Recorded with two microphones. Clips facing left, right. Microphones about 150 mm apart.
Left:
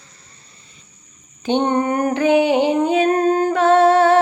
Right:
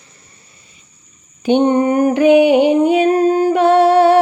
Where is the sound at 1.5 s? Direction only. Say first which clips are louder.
Right 5 dB; 15° right (ahead or behind).